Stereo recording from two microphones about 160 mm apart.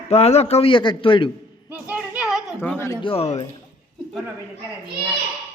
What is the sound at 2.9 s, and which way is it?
Speech, 30° left (ahead or behind).